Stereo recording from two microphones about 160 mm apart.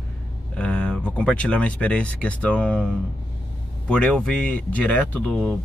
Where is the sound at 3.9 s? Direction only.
5° left (ahead or behind).